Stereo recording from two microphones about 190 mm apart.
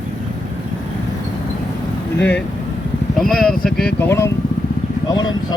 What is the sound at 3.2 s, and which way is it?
Speech, centre (ahead or behind).